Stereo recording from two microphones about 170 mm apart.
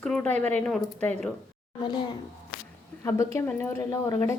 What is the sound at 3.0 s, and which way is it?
A woman's voice, 15° left (ahead or behind).